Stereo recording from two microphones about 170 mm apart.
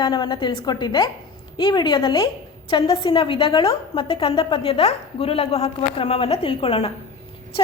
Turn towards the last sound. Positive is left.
turn(degrees=30)  # may be behind; listen again after turning